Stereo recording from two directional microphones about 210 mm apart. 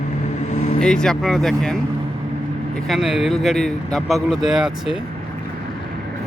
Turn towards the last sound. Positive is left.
turn(degrees=-5)  # may be behind; listen again after turning